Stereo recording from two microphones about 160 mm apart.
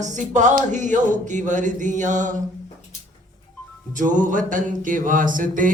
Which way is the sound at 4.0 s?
55° right (ahead or behind).